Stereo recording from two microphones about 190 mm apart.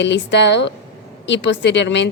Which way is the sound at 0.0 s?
70° left (ahead or behind).